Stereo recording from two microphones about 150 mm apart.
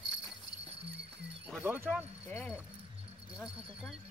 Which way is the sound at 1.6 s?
15° right (ahead or behind).